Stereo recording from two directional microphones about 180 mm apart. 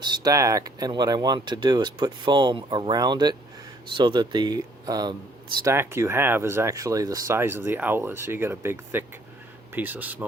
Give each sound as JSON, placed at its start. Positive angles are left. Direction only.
{"t": 0.0, "sound": "speech", "side_deg": -20}